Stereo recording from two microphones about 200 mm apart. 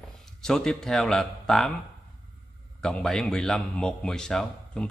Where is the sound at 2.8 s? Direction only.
5° left (ahead or behind).